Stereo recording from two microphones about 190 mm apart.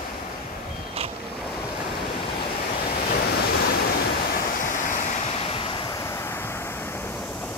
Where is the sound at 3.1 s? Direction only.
60° left (ahead or behind).